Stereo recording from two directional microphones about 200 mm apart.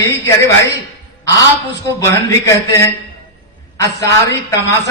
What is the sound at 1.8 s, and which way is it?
Speech, 15° left (ahead or behind).